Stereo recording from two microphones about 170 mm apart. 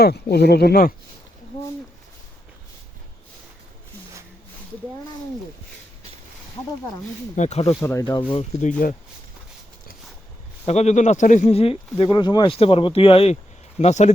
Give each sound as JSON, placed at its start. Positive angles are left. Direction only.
{"t": 0.0, "sound": "speech", "side_deg": 70}
{"t": 7.3, "sound": "speech", "side_deg": 40}
{"t": 7.8, "sound": "speech", "side_deg": 20}
{"t": 8.4, "sound": "speech", "side_deg": 45}
{"t": 10.7, "sound": "speech", "side_deg": 40}